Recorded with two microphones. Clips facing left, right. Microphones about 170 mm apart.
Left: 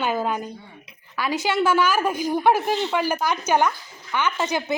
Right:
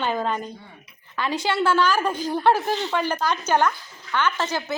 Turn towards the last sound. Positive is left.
turn(degrees=15)  # may be behind; listen again after turning